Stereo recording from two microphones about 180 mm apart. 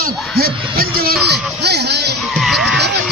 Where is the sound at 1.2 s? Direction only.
65° right (ahead or behind).